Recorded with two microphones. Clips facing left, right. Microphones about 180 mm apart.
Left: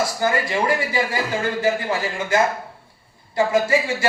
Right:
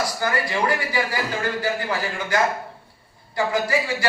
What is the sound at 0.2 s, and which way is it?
A man's voice, 25° left (ahead or behind).